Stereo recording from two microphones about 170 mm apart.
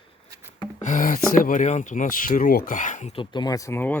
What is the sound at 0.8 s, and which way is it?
Speech, 50° left (ahead or behind).